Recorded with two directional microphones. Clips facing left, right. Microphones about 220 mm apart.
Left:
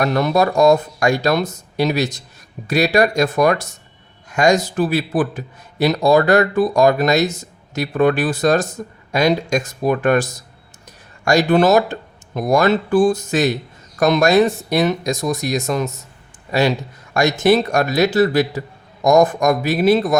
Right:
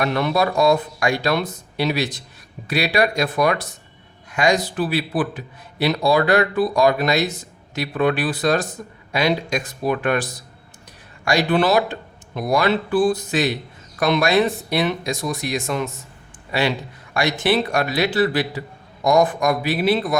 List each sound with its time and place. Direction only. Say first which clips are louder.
0.0 s a man's voice: left 3 dB; 40° left (ahead or behind)